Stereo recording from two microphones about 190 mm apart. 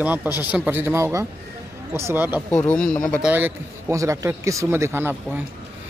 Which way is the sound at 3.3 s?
10° right (ahead or behind).